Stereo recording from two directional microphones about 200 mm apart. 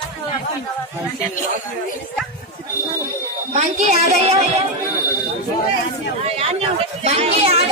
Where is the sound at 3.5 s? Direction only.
35° right (ahead or behind).